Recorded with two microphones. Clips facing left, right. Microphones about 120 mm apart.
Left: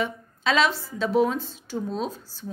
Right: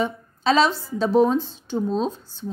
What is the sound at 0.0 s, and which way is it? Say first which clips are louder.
A woman's voice: right 4 dB; 30° right (ahead or behind).